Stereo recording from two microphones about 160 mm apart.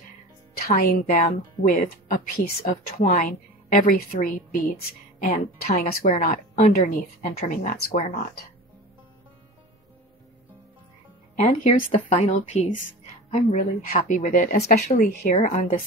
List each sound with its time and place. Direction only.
0.6 s a woman's voice: 70° left (ahead or behind)
11.3 s speech: 40° left (ahead or behind)
13.8 s speech: 55° left (ahead or behind)